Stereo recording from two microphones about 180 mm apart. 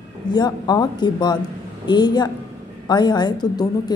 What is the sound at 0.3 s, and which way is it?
A woman's voice, 20° left (ahead or behind).